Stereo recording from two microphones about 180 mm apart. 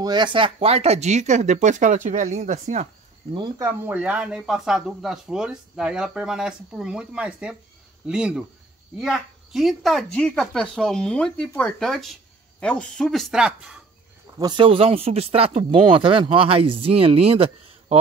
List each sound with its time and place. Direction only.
0.0 s speech: 25° right (ahead or behind)
3.3 s a woman's voice: 20° right (ahead or behind); by 13.7 s 5° right (ahead or behind)
14.4 s speech: 25° right (ahead or behind)